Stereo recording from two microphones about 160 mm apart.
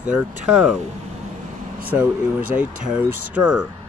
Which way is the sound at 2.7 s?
55° right (ahead or behind).